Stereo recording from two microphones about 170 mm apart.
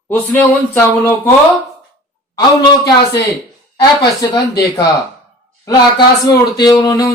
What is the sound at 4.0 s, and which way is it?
Speech, 25° left (ahead or behind).